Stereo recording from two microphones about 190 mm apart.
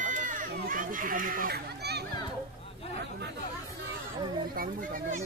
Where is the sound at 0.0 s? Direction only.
40° right (ahead or behind); by 2.0 s 55° right (ahead or behind).